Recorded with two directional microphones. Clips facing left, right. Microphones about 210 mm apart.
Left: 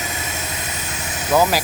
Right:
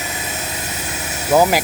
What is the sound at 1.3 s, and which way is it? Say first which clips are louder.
Speech: right 3 dB; 20° right (ahead or behind).